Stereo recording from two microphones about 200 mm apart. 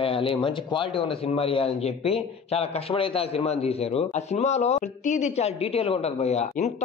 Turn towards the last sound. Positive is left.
turn(degrees=35)  # may be behind; listen again after turning